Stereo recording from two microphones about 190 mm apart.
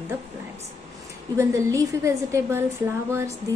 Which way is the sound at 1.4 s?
15° right (ahead or behind).